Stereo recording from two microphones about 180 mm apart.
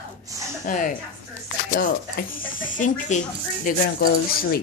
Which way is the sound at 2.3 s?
50° left (ahead or behind).